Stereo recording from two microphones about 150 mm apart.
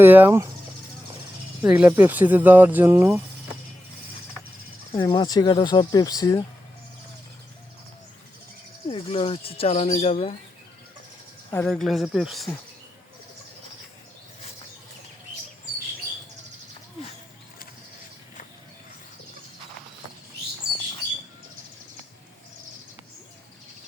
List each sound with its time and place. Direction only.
0.0 s speech: 15° right (ahead or behind)
1.6 s speech: 5° right (ahead or behind)
4.9 s speech: 30° left (ahead or behind)
8.9 s speech: 40° left (ahead or behind)
11.6 s speech: centre (ahead or behind)
20.6 s bird: 90° right